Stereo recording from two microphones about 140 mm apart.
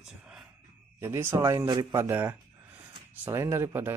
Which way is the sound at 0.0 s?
5° right (ahead or behind).